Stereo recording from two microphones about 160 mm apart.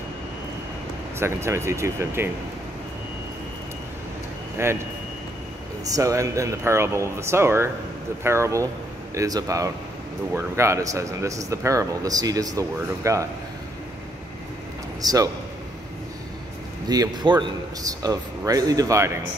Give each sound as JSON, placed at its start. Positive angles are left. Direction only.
{"t": 1.2, "sound": "speech", "side_deg": -15}
{"t": 4.6, "sound": "speech", "side_deg": -15}
{"t": 5.9, "sound": "speech", "side_deg": -20}
{"t": 15.0, "sound": "a man's voice", "side_deg": -25}
{"t": 16.9, "sound": "speech", "side_deg": -25}